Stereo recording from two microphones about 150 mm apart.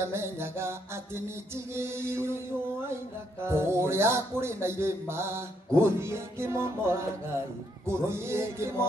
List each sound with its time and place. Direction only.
0.0 s music: 15° right (ahead or behind)
3.4 s music: 15° right (ahead or behind)